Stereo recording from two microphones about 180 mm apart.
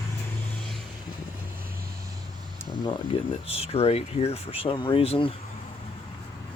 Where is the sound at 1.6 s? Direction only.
55° right (ahead or behind).